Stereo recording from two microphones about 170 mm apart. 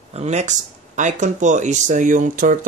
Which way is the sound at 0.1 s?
40° right (ahead or behind).